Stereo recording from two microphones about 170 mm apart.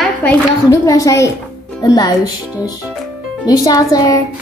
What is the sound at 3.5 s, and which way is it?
Speech, 20° left (ahead or behind).